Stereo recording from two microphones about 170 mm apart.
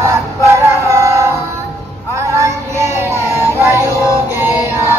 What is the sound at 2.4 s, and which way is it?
Child singing, 15° right (ahead or behind).